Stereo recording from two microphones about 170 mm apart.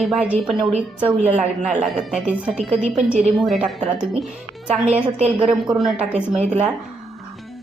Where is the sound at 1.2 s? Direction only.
40° right (ahead or behind).